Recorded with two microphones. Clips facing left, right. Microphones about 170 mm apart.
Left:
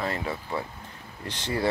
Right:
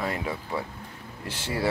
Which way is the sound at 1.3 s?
5° right (ahead or behind).